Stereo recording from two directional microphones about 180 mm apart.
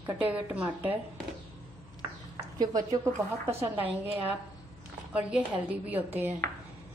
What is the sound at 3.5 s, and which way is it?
Speech, 15° right (ahead or behind).